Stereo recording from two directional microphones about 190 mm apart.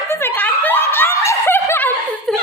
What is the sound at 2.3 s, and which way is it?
Chuckle, centre (ahead or behind).